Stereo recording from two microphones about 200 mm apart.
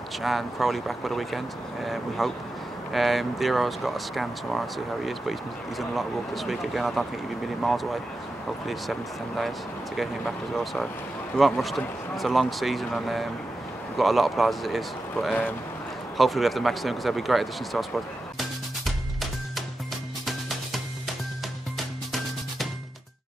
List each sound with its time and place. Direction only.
0.2 s speech: centre (ahead or behind)
9.9 s speech: centre (ahead or behind)
20.2 s music: centre (ahead or behind)